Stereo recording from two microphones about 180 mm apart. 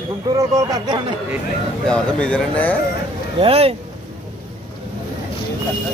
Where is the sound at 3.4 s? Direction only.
30° right (ahead or behind).